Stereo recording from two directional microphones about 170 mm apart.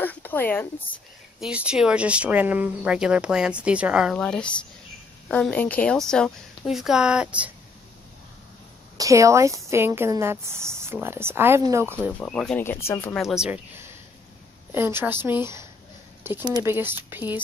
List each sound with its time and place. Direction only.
0.0 s speech: 10° left (ahead or behind)
1.4 s a woman's voice: 5° right (ahead or behind)
8.9 s speech: 20° right (ahead or behind)
12.2 s speech: 5° left (ahead or behind)
13.1 s speech: centre (ahead or behind); by 16.7 s 25° right (ahead or behind)
16.7 s speech: 10° right (ahead or behind)